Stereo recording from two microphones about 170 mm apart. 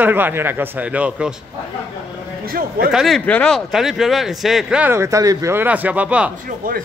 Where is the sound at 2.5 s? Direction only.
60° right (ahead or behind).